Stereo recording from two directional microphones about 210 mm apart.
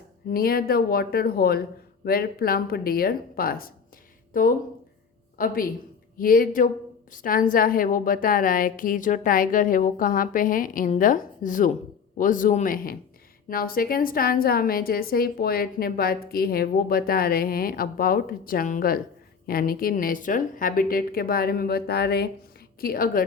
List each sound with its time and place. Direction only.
0.3 s a woman's voice: 45° left (ahead or behind)